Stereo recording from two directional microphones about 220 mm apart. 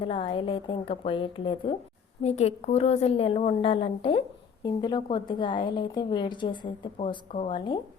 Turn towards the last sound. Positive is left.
turn(degrees=25)  # may be behind; listen again after turning